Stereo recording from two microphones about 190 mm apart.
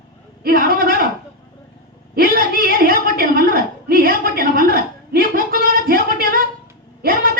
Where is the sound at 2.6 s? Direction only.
50° right (ahead or behind).